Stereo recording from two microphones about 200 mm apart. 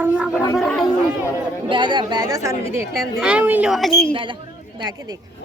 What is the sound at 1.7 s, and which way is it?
Speech, 25° right (ahead or behind).